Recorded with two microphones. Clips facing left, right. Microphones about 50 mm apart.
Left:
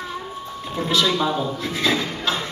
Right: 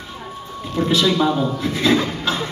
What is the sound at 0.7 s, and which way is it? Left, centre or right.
A man's voice, centre.